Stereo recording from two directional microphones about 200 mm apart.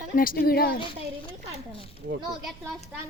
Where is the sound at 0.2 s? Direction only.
45° left (ahead or behind).